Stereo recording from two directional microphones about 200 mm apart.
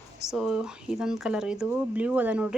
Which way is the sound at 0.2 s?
Centre (ahead or behind).